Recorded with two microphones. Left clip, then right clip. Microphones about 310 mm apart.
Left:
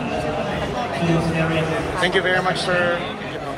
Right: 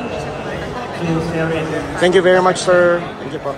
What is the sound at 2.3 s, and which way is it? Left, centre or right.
Speech, centre.